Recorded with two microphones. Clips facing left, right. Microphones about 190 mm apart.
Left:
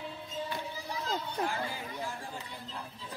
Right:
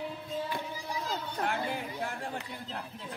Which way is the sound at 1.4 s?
65° right (ahead or behind).